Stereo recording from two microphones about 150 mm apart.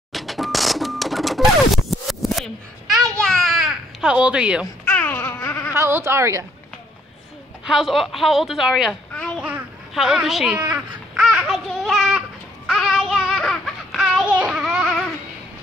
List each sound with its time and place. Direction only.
0.1 s cash register: centre (ahead or behind)
4.8 s a sound: 15° left (ahead or behind)
5.7 s speech: 15° right (ahead or behind)
7.6 s a woman's voice: centre (ahead or behind)
9.4 s a sound: 5° right (ahead or behind)
10.7 s babbling: centre (ahead or behind)